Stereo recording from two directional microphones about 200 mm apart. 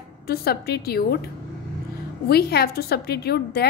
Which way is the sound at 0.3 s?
50° left (ahead or behind).